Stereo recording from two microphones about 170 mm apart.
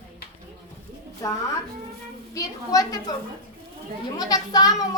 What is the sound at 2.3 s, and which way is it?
Speech, 20° left (ahead or behind).